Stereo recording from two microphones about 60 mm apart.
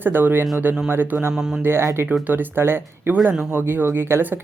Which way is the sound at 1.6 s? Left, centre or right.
Right.